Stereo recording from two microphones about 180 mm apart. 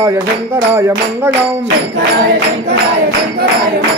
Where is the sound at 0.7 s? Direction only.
15° right (ahead or behind).